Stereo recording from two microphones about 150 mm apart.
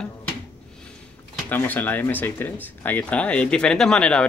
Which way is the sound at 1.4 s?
10° left (ahead or behind).